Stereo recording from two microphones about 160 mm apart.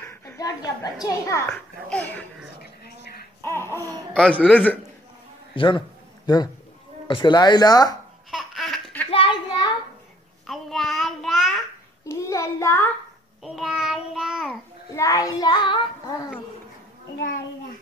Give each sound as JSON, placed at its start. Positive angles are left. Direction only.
{"t": 0.0, "sound": "a sound", "side_deg": 15}
{"t": 1.0, "sound": "speech", "side_deg": 20}
{"t": 1.9, "sound": "a sound", "side_deg": 10}
{"t": 4.1, "sound": "speech", "side_deg": 5}
{"t": 5.5, "sound": "a sound", "side_deg": 30}
{"t": 7.1, "sound": "speech", "side_deg": 30}
{"t": 8.3, "sound": "laughter", "side_deg": 0}
{"t": 9.1, "sound": "a sound", "side_deg": 30}
{"t": 10.4, "sound": "child singing", "side_deg": 0}
{"t": 12.0, "sound": "child singing", "side_deg": 20}
{"t": 13.4, "sound": "child singing", "side_deg": -5}
{"t": 15.0, "sound": "child singing", "side_deg": 20}